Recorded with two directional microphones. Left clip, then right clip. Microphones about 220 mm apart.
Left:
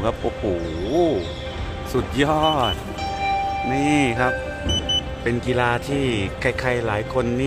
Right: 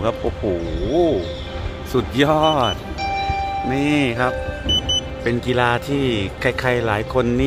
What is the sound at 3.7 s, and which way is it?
A man's voice, 5° right (ahead or behind).